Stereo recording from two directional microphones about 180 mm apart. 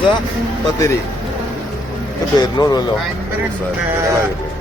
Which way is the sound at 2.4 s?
20° left (ahead or behind).